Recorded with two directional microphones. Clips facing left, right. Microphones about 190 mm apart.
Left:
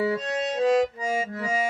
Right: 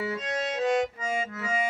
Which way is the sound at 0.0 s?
30° left (ahead or behind).